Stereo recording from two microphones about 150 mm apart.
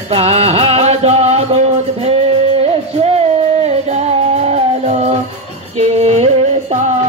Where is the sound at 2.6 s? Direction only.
40° right (ahead or behind).